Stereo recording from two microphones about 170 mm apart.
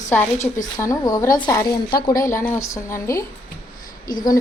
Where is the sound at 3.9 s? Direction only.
55° left (ahead or behind).